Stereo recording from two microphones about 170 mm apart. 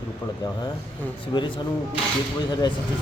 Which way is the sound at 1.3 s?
25° left (ahead or behind).